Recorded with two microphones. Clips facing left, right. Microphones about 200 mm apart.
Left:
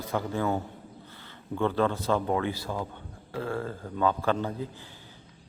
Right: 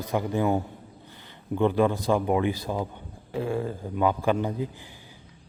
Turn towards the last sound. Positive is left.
turn(degrees=-15)  # may be behind; listen again after turning